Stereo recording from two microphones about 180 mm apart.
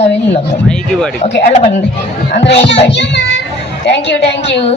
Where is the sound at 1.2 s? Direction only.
40° left (ahead or behind).